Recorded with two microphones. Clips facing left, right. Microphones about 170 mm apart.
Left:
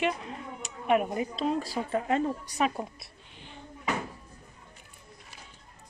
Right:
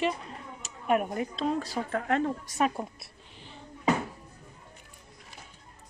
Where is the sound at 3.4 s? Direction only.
35° right (ahead or behind).